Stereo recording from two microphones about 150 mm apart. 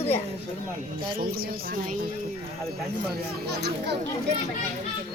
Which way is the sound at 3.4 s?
90° right.